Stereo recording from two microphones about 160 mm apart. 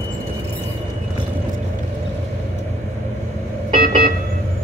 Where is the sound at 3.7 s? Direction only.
60° right (ahead or behind).